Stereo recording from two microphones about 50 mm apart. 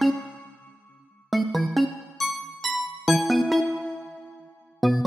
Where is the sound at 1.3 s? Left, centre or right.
Centre.